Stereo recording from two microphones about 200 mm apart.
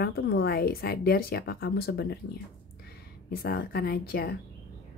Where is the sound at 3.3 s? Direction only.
50° left (ahead or behind).